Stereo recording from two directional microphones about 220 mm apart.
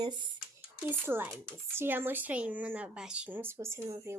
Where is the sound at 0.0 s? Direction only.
20° right (ahead or behind).